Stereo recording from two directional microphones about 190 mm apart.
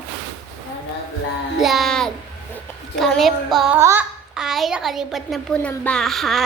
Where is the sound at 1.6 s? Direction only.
Centre (ahead or behind).